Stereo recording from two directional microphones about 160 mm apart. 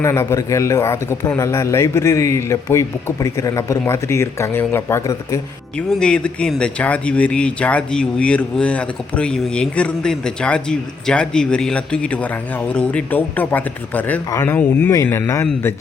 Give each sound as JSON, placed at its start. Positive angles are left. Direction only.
{"t": 0.0, "sound": "a man's voice", "side_deg": 15}
{"t": 5.9, "sound": "speech", "side_deg": 5}